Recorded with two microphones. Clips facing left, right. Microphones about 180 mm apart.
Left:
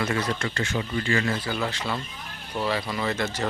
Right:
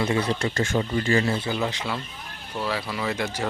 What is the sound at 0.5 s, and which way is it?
Speech, 45° right (ahead or behind).